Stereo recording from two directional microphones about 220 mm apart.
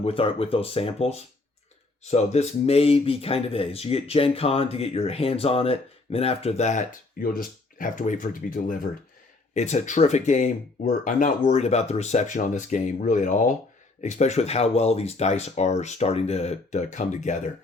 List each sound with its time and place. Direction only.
0.0 s speech: 25° left (ahead or behind)